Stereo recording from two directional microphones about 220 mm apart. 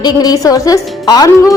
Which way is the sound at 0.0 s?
15° left (ahead or behind).